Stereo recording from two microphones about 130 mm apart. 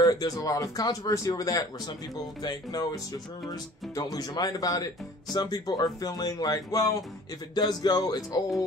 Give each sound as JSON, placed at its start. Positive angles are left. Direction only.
{"t": 0.0, "sound": "speech", "side_deg": 30}